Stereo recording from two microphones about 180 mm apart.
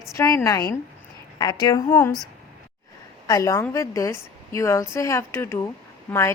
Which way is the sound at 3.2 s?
20° left (ahead or behind).